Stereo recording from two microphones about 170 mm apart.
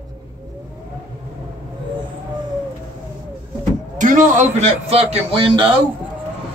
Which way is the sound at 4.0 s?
50° right (ahead or behind).